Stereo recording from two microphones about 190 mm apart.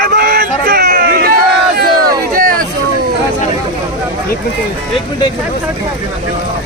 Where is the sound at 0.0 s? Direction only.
50° right (ahead or behind).